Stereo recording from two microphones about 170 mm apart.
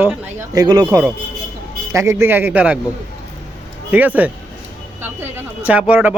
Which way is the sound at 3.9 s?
10° right (ahead or behind).